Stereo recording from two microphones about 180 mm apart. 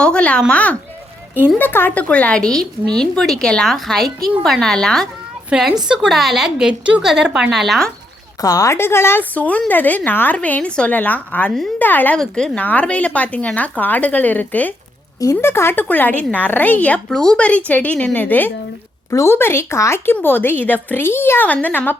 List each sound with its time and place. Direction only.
0.0 s a woman's voice: 5° left (ahead or behind)
8.4 s speech: 15° left (ahead or behind)